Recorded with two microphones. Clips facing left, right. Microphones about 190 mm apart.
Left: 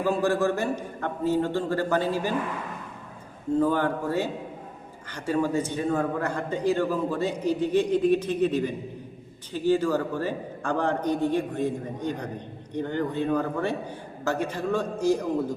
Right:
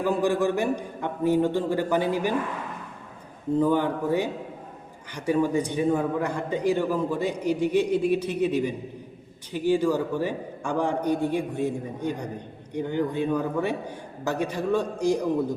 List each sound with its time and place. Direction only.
0.2 s a man's voice: 15° right (ahead or behind)
3.6 s a man's voice: 15° right (ahead or behind)